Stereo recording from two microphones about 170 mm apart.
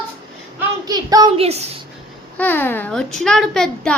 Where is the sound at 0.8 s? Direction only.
25° right (ahead or behind).